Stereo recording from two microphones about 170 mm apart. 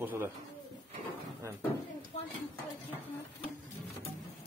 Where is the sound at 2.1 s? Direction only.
35° left (ahead or behind).